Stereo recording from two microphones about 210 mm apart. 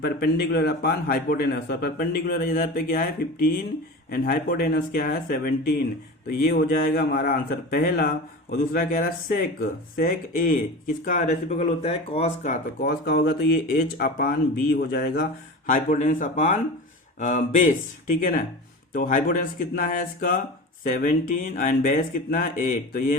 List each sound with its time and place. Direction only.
0.0 s speech: 50° left (ahead or behind)